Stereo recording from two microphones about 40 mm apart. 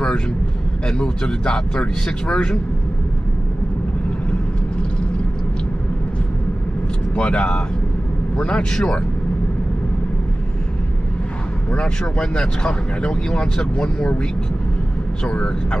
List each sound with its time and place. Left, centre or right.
0.8 s speech: centre
7.2 s speech: left
12.2 s speech: left
15.2 s speech: left